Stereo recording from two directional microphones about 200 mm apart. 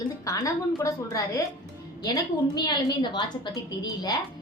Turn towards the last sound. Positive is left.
turn(degrees=20)  # may be behind; listen again after turning